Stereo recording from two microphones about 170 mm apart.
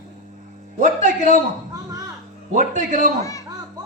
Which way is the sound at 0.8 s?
50° right (ahead or behind).